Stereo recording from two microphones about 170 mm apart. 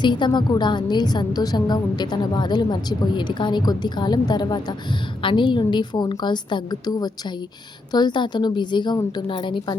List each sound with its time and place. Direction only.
0.0 s a woman's voice: 25° left (ahead or behind)